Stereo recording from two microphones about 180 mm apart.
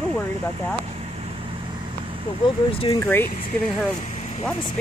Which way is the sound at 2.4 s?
30° left (ahead or behind).